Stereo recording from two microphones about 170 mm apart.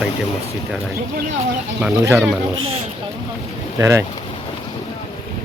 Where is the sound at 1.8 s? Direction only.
10° right (ahead or behind).